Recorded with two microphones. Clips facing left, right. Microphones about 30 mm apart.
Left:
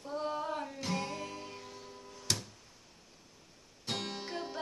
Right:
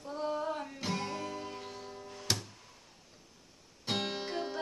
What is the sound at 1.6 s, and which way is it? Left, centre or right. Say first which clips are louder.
Music: right 4 dB; right.